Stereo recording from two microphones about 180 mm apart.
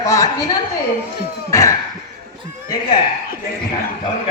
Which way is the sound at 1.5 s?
15° left (ahead or behind).